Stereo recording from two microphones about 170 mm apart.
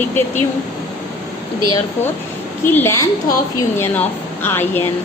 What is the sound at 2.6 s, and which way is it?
Speech, 10° left (ahead or behind).